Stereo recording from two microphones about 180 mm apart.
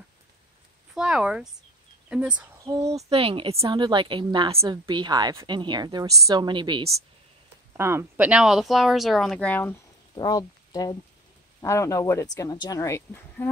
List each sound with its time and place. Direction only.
0.9 s speech: 5° right (ahead or behind)
2.6 s speech: 20° right (ahead or behind)
3.1 s a woman's voice: 30° right (ahead or behind)
7.7 s speech: 15° right (ahead or behind); by 9.8 s 10° left (ahead or behind)
10.1 s speech: 20° left (ahead or behind)